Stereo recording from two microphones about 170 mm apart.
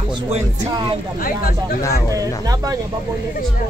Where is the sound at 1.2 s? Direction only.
60° left (ahead or behind).